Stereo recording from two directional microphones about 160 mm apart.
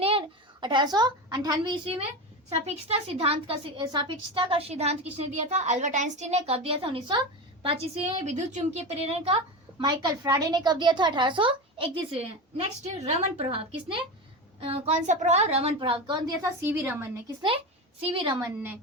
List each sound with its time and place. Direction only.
0.0 s a child's voice: 35° right (ahead or behind)
16.4 s a woman's voice: 15° right (ahead or behind)
18.0 s a woman's voice: 35° right (ahead or behind)
18.3 s a woman's voice: 15° right (ahead or behind)